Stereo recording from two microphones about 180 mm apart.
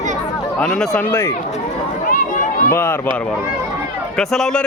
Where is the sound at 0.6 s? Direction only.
5° left (ahead or behind).